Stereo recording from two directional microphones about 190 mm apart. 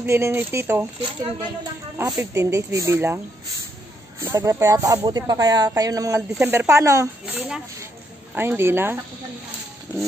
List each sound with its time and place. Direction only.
0.0 s speech: 15° right (ahead or behind)
2.0 s speech: 15° right (ahead or behind)
4.2 s speech: 15° right (ahead or behind)